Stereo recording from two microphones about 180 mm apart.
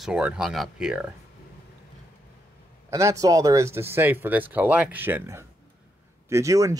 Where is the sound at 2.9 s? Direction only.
20° right (ahead or behind).